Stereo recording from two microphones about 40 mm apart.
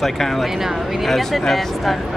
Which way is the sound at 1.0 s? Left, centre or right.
Centre.